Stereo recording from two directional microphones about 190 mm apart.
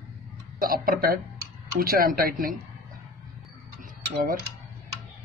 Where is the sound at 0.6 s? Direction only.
50° right (ahead or behind).